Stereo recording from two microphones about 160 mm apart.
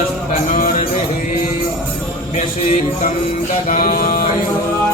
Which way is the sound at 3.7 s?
65° left (ahead or behind).